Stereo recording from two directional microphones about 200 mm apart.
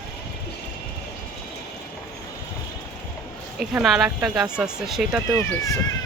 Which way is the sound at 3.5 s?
Centre (ahead or behind).